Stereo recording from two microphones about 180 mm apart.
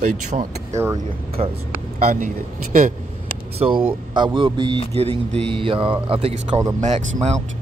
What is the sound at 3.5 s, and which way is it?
A man's voice, 30° right (ahead or behind).